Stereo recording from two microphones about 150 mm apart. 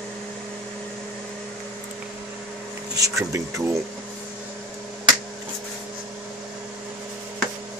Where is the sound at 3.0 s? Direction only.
20° right (ahead or behind).